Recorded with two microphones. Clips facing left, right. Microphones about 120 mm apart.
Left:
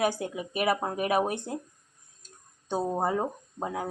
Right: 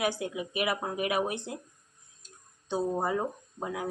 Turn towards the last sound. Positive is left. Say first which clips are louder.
# left 2 dB
turn(degrees=35)  # may be behind; listen again after turning